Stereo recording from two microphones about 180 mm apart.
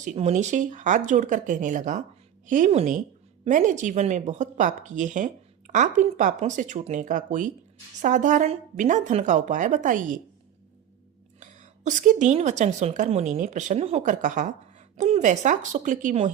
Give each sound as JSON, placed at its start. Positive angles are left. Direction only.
{"t": 0.0, "sound": "a woman's voice", "side_deg": -40}
{"t": 11.3, "sound": "a woman's voice", "side_deg": -45}